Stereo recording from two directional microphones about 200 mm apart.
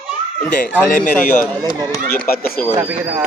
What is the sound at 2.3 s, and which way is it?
Speech, 50° left (ahead or behind).